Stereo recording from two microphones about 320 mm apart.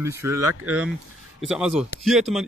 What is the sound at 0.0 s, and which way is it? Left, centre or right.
Speech, centre.